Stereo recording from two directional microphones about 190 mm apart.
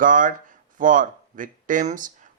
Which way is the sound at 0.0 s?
45° right (ahead or behind).